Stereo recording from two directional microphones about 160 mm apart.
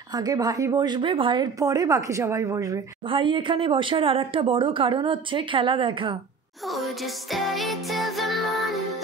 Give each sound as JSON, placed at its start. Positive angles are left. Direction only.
{"t": 0.1, "sound": "speech", "side_deg": -25}
{"t": 3.1, "sound": "speech", "side_deg": -30}
{"t": 6.7, "sound": "music", "side_deg": 0}